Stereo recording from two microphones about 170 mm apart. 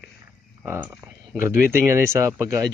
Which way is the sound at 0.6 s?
15° right (ahead or behind).